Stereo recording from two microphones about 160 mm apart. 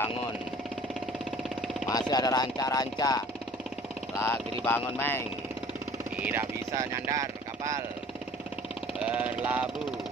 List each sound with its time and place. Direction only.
1.9 s speech: 25° left (ahead or behind)
4.3 s speech: 15° left (ahead or behind)
6.3 s speech: 20° right (ahead or behind)
9.0 s a sound: 10° right (ahead or behind)